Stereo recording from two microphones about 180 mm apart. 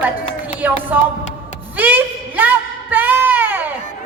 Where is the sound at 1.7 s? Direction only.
10° right (ahead or behind).